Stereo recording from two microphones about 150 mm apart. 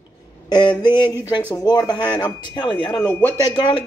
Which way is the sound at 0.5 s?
30° left (ahead or behind).